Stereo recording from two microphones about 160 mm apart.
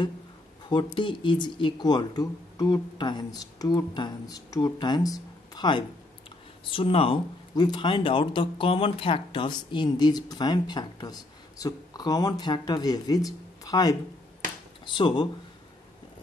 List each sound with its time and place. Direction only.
0.7 s speech: 30° left (ahead or behind)
15.0 s speech: 30° left (ahead or behind)